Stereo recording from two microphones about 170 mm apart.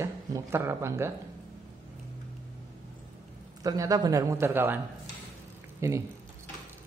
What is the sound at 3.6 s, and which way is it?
Speech, 20° right (ahead or behind).